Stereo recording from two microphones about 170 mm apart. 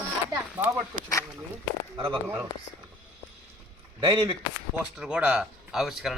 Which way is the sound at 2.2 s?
10° right (ahead or behind).